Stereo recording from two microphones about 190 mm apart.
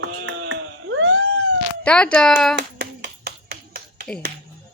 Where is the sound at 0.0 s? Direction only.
85° right.